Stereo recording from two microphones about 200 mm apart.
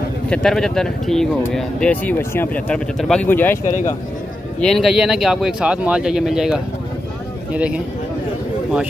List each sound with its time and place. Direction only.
0.3 s speech: centre (ahead or behind)
4.6 s speech: centre (ahead or behind)